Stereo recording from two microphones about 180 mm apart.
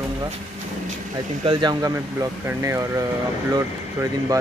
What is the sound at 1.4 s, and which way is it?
Speech, 20° right (ahead or behind).